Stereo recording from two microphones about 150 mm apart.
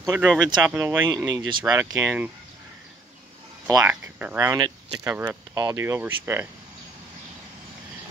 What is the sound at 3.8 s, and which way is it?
Speech, 10° right (ahead or behind).